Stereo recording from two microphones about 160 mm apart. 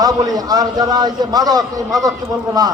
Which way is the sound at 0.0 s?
25° right (ahead or behind).